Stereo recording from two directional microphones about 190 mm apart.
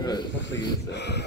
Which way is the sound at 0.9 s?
60° left (ahead or behind).